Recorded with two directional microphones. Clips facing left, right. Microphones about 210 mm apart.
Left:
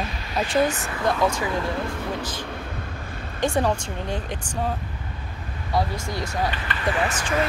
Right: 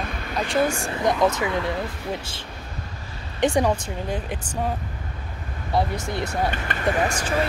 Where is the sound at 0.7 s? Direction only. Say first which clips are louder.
Right 2 dB; 25° right (ahead or behind).